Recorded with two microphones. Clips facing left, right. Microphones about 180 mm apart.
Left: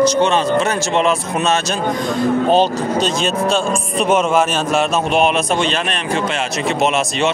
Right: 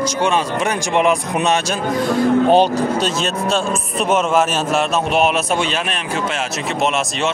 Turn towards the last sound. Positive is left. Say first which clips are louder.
# left 2 dB
turn(degrees=-5)  # may be behind; listen again after turning